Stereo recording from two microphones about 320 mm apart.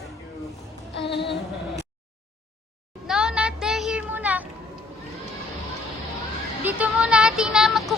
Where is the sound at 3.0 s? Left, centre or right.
Centre.